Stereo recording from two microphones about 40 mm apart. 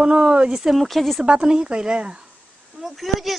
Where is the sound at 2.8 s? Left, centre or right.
Centre.